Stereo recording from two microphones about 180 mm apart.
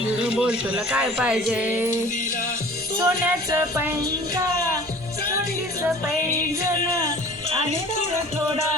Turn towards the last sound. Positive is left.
turn(degrees=-15)  # may be behind; listen again after turning